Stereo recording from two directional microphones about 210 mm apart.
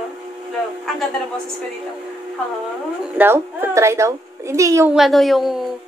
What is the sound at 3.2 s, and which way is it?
A woman's voice, 10° right (ahead or behind).